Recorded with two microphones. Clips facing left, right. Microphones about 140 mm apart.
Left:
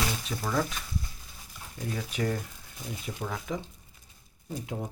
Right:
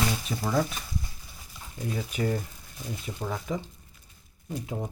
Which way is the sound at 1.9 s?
10° right (ahead or behind).